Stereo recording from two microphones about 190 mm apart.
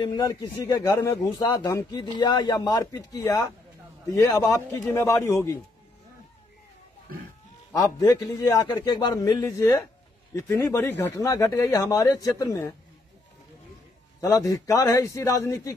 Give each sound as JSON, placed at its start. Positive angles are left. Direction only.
{"t": 0.0, "sound": "speech", "side_deg": 20}
{"t": 7.7, "sound": "speech", "side_deg": 20}
{"t": 14.2, "sound": "speech", "side_deg": 15}